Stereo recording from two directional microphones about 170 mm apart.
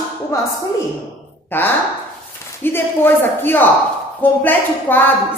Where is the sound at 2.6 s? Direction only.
15° left (ahead or behind).